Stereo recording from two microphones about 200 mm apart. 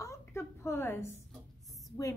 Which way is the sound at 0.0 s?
15° left (ahead or behind).